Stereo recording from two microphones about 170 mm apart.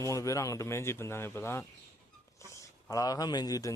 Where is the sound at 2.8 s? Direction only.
20° left (ahead or behind).